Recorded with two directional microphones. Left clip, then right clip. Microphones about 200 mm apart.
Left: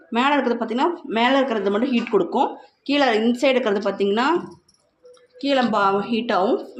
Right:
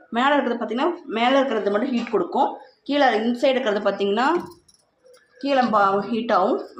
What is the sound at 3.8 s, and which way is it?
Speech, 20° left (ahead or behind).